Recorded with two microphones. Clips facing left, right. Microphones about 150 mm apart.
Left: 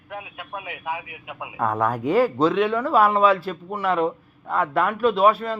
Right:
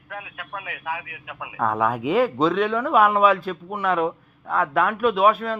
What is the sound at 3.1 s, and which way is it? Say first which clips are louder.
A man's voice: even; 10° right (ahead or behind).